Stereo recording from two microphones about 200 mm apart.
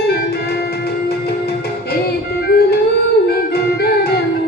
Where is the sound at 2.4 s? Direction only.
50° left (ahead or behind).